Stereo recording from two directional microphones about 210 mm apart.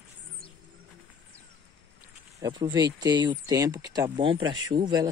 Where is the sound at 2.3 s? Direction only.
20° right (ahead or behind).